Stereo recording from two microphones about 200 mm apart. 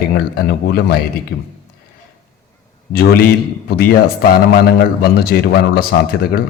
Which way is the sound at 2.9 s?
50° left (ahead or behind).